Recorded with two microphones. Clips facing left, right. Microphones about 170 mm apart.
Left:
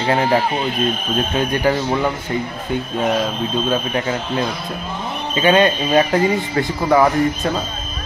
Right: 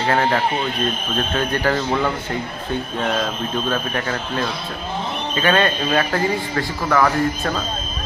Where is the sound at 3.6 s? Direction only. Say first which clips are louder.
Left 3 dB; 20° left (ahead or behind).